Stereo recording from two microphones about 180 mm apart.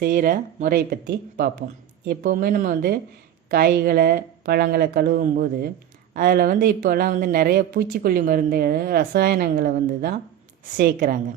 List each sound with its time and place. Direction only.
0.0 s speech: 50° right (ahead or behind)